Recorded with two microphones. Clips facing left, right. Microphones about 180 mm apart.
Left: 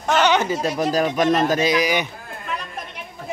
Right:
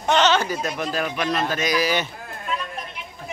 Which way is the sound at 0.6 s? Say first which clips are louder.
Left 6 dB; 40° left (ahead or behind).